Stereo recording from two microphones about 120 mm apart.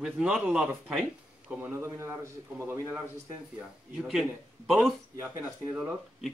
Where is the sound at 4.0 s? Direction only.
5° right (ahead or behind).